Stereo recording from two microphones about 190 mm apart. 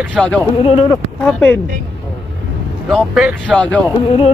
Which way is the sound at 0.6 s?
30° left (ahead or behind).